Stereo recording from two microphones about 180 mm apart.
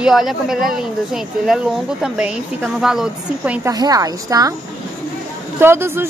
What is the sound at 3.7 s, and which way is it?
Speech, 20° right (ahead or behind).